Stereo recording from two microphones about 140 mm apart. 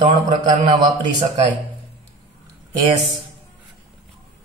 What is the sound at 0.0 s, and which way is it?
Speech, 35° right (ahead or behind).